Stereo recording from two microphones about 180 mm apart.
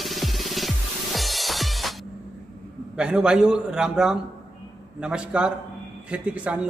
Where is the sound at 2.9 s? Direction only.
5° right (ahead or behind).